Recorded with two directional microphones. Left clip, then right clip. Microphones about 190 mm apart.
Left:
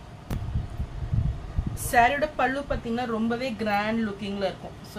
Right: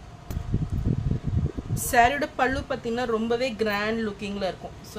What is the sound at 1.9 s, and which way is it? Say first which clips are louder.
A woman's voice: even; 65° right (ahead or behind).